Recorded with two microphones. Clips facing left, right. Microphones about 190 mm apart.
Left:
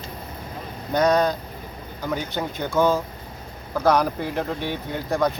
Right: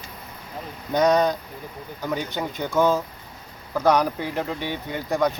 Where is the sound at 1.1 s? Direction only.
15° right (ahead or behind).